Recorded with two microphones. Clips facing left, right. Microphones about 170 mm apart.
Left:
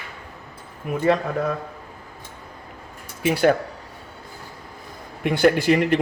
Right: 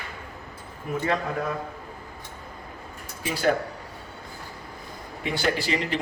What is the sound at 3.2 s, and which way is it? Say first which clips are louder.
Speech: left 9 dB; 65° left (ahead or behind).